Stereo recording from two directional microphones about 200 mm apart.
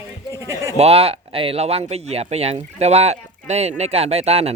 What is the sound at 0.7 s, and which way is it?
Speech, 30° right (ahead or behind).